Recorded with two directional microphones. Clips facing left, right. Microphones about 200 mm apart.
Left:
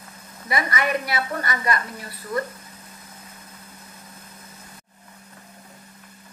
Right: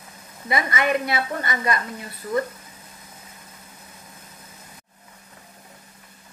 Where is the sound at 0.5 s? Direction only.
25° right (ahead or behind).